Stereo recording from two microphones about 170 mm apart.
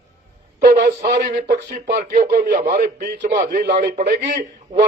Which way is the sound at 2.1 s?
55° right (ahead or behind).